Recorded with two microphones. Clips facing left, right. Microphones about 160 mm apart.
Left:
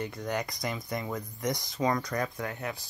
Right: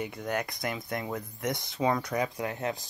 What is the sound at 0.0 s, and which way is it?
Speech, 5° right (ahead or behind).